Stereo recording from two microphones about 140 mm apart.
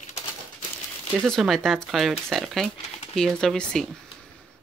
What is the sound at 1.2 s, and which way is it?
Speech, centre (ahead or behind).